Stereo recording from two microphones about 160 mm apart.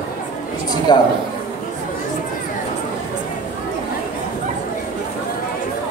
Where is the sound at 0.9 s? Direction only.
25° left (ahead or behind).